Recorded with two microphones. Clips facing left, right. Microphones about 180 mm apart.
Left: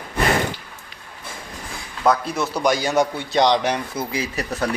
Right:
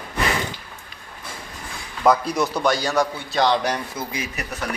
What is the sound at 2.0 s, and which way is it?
Speech, centre (ahead or behind).